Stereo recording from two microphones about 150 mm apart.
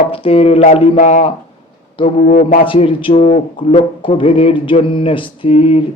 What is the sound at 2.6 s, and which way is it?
Speech, 35° left (ahead or behind).